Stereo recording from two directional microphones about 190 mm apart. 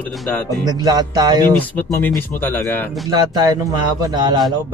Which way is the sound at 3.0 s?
20° right (ahead or behind).